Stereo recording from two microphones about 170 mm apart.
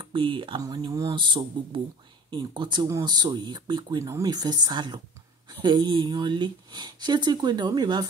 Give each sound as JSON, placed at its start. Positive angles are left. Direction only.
{"t": 0.0, "sound": "speech", "side_deg": -30}